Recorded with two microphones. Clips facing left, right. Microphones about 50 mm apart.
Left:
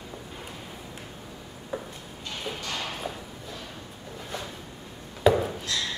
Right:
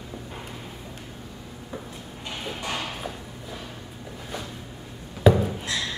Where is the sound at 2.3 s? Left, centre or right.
Centre.